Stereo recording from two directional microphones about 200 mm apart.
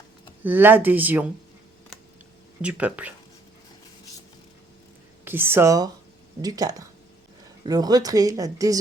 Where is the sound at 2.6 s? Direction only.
5° right (ahead or behind).